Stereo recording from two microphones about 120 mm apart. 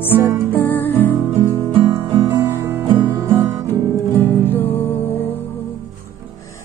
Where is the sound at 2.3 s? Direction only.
20° right (ahead or behind).